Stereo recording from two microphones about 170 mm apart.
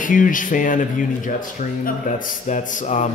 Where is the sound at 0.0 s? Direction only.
50° left (ahead or behind).